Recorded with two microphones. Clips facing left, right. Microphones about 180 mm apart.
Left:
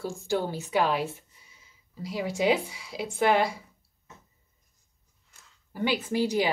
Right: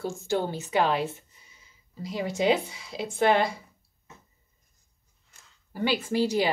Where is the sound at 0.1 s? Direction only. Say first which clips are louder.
Right 1 dB; 10° left (ahead or behind).